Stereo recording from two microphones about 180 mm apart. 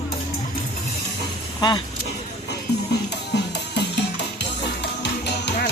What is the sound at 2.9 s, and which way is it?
Music, 70° left (ahead or behind).